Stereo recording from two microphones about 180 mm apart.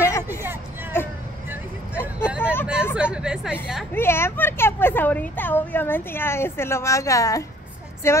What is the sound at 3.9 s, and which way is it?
A woman's voice, 15° left (ahead or behind).